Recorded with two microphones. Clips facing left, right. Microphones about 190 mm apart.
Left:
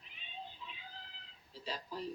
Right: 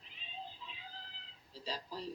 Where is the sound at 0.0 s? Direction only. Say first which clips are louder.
Right 1 dB; 35° right (ahead or behind).